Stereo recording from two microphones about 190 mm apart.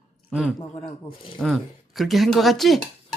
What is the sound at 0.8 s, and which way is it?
Speech, 30° left (ahead or behind).